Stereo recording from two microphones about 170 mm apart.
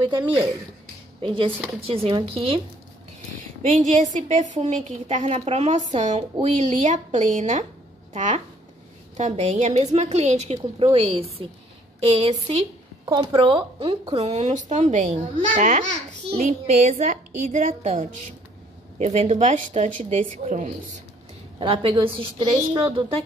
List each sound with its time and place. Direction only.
1.2 s a woman's voice: 30° right (ahead or behind)
3.6 s a woman's voice: 45° right (ahead or behind)
21.5 s a woman's voice: 30° right (ahead or behind)